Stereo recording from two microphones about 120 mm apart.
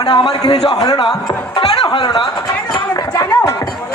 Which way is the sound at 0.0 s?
40° left (ahead or behind).